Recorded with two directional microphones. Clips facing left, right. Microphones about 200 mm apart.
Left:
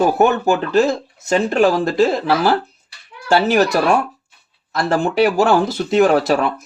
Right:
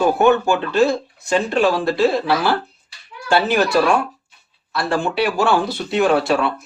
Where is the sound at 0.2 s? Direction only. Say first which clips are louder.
Even; 40° left (ahead or behind).